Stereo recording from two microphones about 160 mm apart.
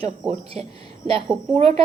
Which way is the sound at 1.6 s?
40° right (ahead or behind).